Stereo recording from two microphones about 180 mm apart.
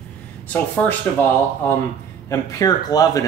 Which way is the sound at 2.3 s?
20° left (ahead or behind).